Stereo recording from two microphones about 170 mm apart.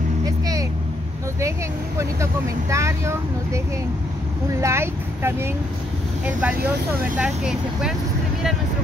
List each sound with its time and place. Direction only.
2.7 s speech: 15° right (ahead or behind)